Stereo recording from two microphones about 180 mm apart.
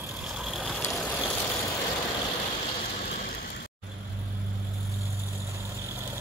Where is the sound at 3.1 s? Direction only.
55° left (ahead or behind).